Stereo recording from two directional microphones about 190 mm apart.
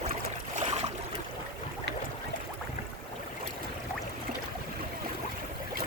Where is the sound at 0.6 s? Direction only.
35° right (ahead or behind).